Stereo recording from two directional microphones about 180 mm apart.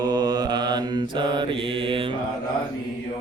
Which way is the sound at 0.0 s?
20° right (ahead or behind).